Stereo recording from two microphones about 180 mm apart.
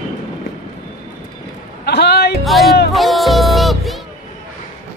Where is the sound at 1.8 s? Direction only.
65° left (ahead or behind).